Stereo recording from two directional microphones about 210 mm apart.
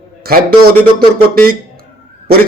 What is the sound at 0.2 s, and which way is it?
Speech, 45° right (ahead or behind).